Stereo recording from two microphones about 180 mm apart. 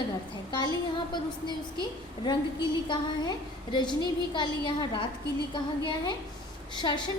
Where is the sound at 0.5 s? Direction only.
25° left (ahead or behind).